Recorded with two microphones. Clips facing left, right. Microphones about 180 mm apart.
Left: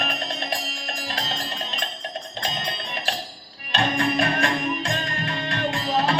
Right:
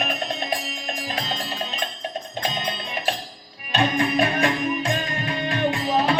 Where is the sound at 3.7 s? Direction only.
20° right (ahead or behind).